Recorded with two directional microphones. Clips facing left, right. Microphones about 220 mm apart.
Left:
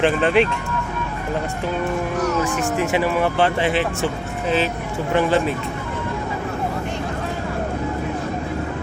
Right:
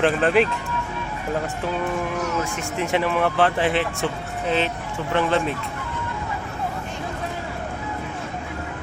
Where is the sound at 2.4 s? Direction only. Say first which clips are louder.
Left 6 dB; 80° left.